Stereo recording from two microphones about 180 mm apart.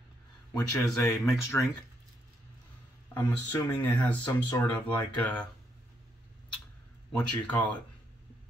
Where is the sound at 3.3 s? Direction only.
10° left (ahead or behind).